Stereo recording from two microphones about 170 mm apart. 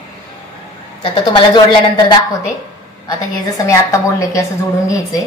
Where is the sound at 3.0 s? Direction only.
20° left (ahead or behind).